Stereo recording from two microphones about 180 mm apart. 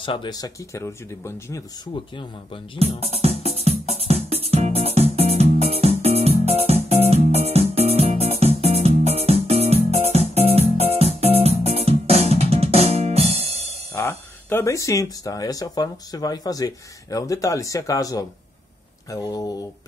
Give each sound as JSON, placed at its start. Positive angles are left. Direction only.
{"t": 0.0, "sound": "speech", "side_deg": 25}
{"t": 2.1, "sound": "speech", "side_deg": 30}
{"t": 3.6, "sound": "music", "side_deg": -35}
{"t": 13.9, "sound": "speech", "side_deg": 15}